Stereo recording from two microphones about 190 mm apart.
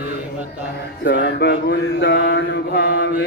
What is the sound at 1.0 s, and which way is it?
Mantra, 70° left (ahead or behind).